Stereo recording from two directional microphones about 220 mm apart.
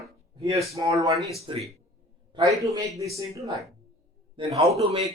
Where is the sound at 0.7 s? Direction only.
15° right (ahead or behind).